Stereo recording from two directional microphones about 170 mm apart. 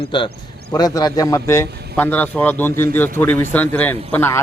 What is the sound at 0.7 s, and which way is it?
A man's voice, 20° left (ahead or behind).